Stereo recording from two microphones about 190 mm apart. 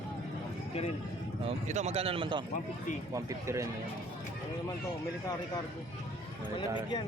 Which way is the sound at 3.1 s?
15° right (ahead or behind).